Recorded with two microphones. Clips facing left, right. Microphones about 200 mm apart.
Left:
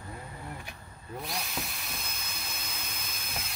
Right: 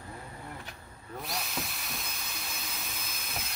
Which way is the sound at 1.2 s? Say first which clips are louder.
Right 1 dB; centre (ahead or behind).